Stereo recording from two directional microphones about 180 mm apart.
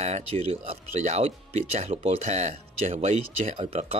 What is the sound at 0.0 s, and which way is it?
Speech, 35° right (ahead or behind).